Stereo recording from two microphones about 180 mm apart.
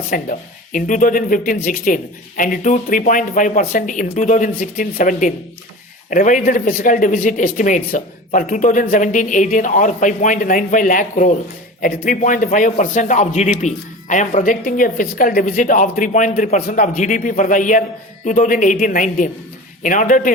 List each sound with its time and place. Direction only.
0.1 s speech: 50° left (ahead or behind)